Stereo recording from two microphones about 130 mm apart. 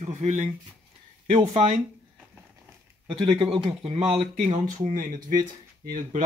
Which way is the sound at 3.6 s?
40° right (ahead or behind).